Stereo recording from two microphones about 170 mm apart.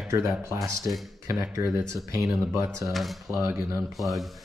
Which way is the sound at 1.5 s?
20° right (ahead or behind).